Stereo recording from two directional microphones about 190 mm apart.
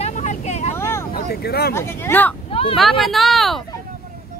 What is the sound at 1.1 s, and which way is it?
Vehicle, 55° left (ahead or behind).